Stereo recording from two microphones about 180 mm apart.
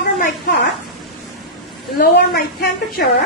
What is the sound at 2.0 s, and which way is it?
A man's voice, 60° left (ahead or behind).